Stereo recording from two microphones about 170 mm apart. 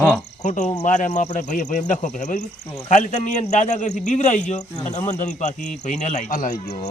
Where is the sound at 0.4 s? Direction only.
45° left (ahead or behind).